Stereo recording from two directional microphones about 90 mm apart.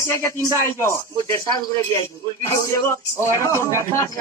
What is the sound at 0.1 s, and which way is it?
Speech, 30° left (ahead or behind).